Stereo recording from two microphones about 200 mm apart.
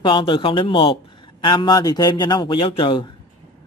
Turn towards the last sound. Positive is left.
turn(degrees=25)  # may be behind; listen again after turning